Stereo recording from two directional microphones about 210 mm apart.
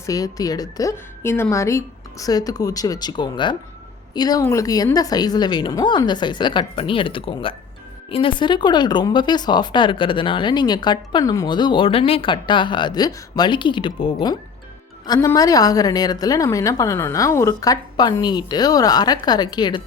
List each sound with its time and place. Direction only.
0.0 s a woman's voice: 15° left (ahead or behind)